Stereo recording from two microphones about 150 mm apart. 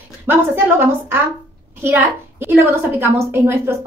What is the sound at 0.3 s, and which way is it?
A woman's voice, 15° right (ahead or behind).